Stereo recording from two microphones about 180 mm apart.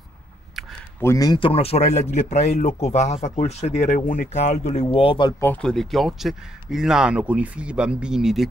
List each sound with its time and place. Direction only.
1.0 s speech: 20° left (ahead or behind)
5.4 s speech: 5° left (ahead or behind)